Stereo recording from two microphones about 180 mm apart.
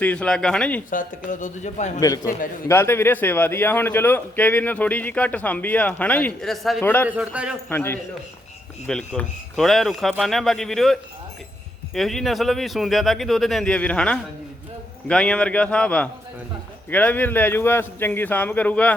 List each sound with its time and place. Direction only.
0.0 s speech: 5° left (ahead or behind)
0.9 s speech: 45° left (ahead or behind)
2.0 s a man's voice: 20° left (ahead or behind); by 6.8 s centre (ahead or behind)
6.8 s a man's voice: 10° left (ahead or behind)
7.1 s a man's voice: 5° right (ahead or behind)
7.7 s a man's voice: 10° left (ahead or behind)